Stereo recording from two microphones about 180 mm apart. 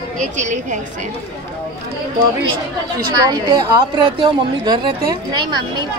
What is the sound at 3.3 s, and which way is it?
A woman's voice, 20° right (ahead or behind).